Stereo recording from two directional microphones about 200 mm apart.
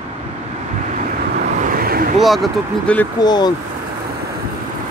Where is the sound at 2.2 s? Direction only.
Centre (ahead or behind).